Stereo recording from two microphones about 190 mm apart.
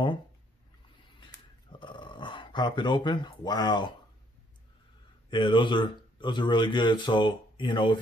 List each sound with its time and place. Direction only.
1.2 s dog: 25° left (ahead or behind)
5.3 s speech: 25° left (ahead or behind)